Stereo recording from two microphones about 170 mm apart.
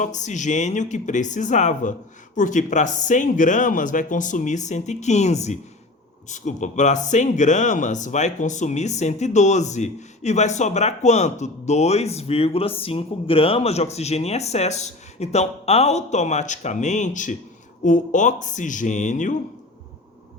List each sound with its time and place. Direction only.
0.0 s speech: 45° left (ahead or behind)